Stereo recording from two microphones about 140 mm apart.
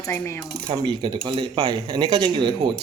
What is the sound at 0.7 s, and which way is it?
Speech, 35° right (ahead or behind).